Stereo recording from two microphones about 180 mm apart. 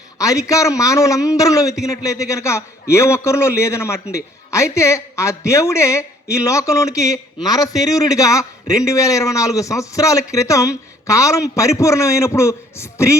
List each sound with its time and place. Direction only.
0.2 s a man's voice: 20° left (ahead or behind)